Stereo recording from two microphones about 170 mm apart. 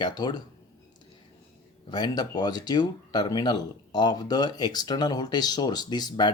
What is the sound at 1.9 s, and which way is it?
Speech, 25° left (ahead or behind).